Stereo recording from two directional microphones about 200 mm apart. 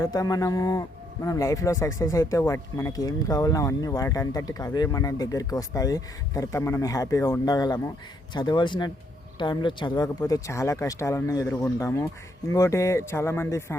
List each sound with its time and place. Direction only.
0.0 s speech: 20° left (ahead or behind)